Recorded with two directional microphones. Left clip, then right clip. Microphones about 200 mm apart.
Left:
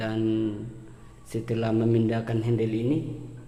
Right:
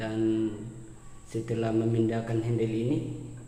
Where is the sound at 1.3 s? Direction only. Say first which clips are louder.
Left 2 dB; 45° left (ahead or behind).